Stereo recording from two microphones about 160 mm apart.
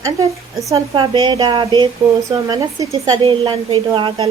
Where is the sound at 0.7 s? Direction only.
30° right (ahead or behind).